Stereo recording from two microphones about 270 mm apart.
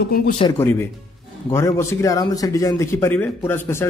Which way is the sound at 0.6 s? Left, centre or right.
Centre.